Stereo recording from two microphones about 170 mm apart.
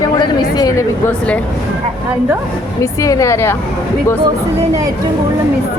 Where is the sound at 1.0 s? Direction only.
5° left (ahead or behind).